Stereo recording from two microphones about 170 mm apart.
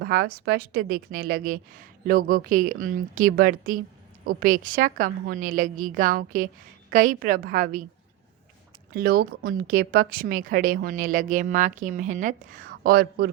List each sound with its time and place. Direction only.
0.0 s a woman's voice: 65° right (ahead or behind)
8.9 s a woman's voice: 60° right (ahead or behind)